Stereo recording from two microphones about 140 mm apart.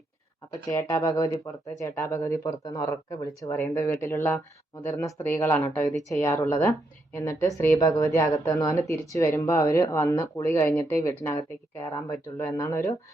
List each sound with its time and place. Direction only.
0.7 s a woman's voice: 20° left (ahead or behind)